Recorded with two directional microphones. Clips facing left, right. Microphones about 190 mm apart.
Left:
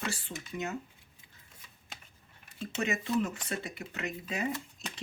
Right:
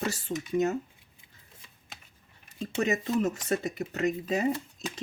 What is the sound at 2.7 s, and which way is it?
Speech, 40° right (ahead or behind).